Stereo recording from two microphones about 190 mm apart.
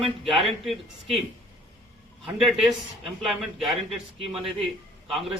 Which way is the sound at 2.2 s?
Centre (ahead or behind).